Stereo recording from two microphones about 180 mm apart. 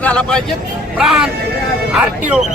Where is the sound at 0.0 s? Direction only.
5° left (ahead or behind).